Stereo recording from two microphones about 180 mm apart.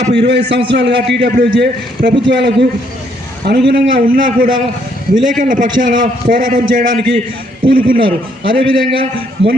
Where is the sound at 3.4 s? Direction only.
65° right (ahead or behind).